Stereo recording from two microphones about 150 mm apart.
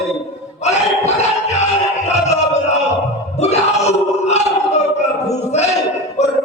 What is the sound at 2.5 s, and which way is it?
Music, 50° left (ahead or behind).